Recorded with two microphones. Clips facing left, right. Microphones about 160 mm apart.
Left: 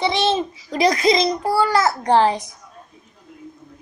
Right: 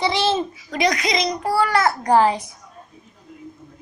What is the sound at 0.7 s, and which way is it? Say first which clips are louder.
A woman's voice: left 4 dB; 30° left (ahead or behind).